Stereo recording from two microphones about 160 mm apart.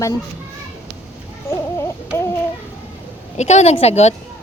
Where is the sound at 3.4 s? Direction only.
45° left (ahead or behind).